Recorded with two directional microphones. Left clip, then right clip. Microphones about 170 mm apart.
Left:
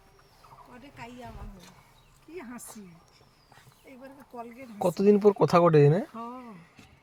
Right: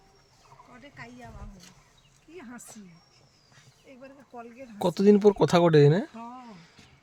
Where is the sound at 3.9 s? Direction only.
Centre (ahead or behind).